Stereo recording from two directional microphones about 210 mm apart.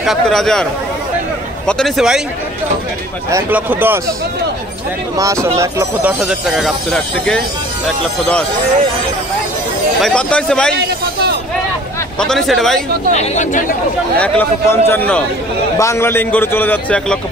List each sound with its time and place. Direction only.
0.0 s speech: centre (ahead or behind)
1.7 s speech: centre (ahead or behind)
3.3 s speech: 10° right (ahead or behind)
5.1 s speech: 15° right (ahead or behind); by 7.4 s 5° left (ahead or behind)
10.0 s speech: 5° left (ahead or behind)
12.2 s speech: centre (ahead or behind)
13.1 s speech: 35° left (ahead or behind)
14.1 s a man's voice: 5° left (ahead or behind)